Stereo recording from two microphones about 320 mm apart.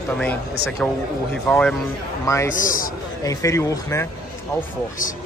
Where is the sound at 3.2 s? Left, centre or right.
Centre.